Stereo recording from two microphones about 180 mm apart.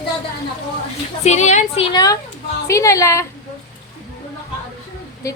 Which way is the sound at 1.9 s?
20° left (ahead or behind).